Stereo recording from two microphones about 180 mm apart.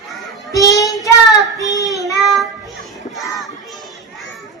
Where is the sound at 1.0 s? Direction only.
20° left (ahead or behind).